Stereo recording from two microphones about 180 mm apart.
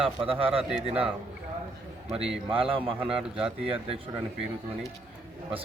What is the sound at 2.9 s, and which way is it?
A man's voice, 5° right (ahead or behind).